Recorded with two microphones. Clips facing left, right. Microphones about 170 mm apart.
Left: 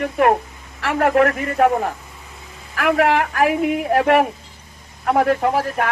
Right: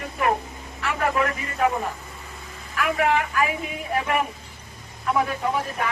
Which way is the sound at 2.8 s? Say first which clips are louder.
Left 5 dB; 75° left (ahead or behind).